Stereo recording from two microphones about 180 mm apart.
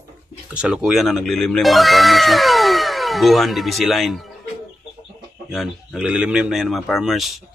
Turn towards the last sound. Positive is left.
turn(degrees=0)  # may be behind; listen again after turning